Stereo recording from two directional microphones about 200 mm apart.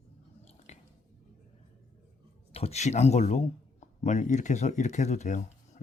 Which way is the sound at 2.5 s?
30° left (ahead or behind).